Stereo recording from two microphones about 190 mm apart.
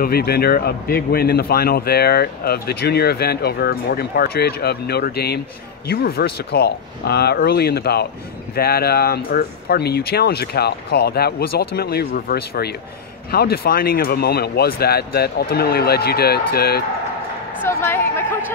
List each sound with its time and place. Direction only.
0.0 s speech: 55° left (ahead or behind)
17.6 s a woman's voice: 15° left (ahead or behind)